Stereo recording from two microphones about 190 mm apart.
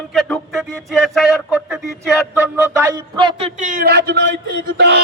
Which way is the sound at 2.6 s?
15° right (ahead or behind).